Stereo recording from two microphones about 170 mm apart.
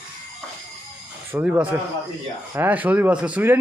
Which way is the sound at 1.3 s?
10° right (ahead or behind).